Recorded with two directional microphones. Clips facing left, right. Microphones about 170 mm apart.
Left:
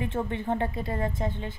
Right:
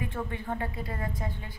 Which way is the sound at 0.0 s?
25° left (ahead or behind).